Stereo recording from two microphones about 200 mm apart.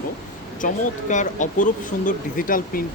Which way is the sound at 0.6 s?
40° left (ahead or behind).